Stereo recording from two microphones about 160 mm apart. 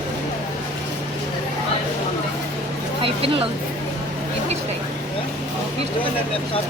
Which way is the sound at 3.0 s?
35° right (ahead or behind).